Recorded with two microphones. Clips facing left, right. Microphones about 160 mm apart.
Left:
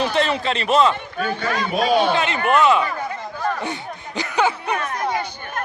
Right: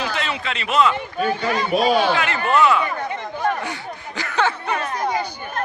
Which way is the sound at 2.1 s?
20° left (ahead or behind).